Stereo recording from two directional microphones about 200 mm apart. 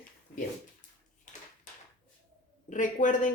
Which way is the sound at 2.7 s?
40° left (ahead or behind).